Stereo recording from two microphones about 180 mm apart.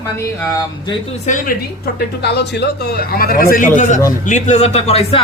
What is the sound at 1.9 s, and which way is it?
Speech, 65° left (ahead or behind).